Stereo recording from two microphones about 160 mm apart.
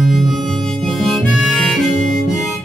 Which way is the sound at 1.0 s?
Centre (ahead or behind).